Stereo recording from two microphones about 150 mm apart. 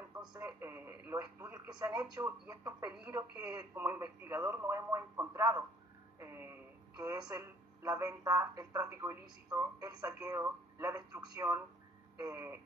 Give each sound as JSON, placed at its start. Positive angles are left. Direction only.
{"t": 0.3, "sound": "speech", "side_deg": -20}
{"t": 6.1, "sound": "music", "side_deg": -15}
{"t": 7.0, "sound": "speech", "side_deg": -25}